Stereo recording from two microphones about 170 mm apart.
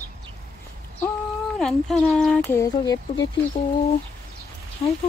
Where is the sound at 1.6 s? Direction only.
Centre (ahead or behind); by 3.2 s 25° left (ahead or behind).